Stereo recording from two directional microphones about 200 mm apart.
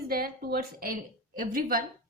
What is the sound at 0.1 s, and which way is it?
A woman's voice, 50° right (ahead or behind).